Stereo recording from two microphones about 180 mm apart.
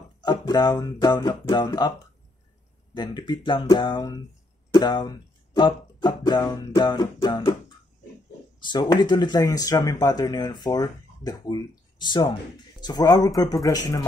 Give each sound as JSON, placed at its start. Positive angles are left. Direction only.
{"t": 0.2, "sound": "speech", "side_deg": 20}
{"t": 8.5, "sound": "speech", "side_deg": 25}